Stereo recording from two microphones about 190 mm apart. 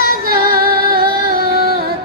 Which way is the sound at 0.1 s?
50° right (ahead or behind).